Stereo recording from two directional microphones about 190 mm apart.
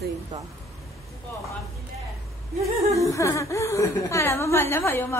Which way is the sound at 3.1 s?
15° left (ahead or behind).